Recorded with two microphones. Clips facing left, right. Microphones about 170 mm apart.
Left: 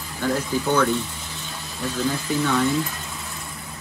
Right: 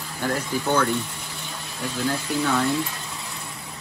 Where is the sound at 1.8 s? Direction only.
Centre (ahead or behind).